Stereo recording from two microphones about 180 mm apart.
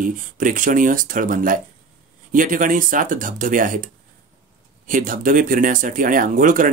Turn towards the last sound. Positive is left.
turn(degrees=-50)  # may be behind; listen again after turning